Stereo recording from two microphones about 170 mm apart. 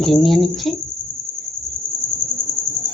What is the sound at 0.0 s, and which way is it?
Speech, centre (ahead or behind).